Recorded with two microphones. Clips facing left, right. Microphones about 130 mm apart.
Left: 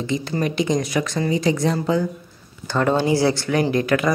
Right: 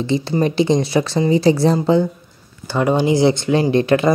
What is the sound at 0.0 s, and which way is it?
Speech, 30° right (ahead or behind).